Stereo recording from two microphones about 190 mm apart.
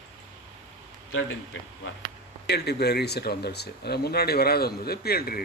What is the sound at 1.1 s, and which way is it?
Speech, 90° left.